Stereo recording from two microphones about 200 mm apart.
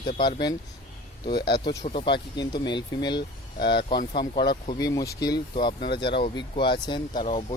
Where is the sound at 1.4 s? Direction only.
55° left (ahead or behind).